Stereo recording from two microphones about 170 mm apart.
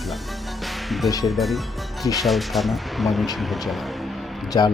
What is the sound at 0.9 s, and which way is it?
Music, centre (ahead or behind).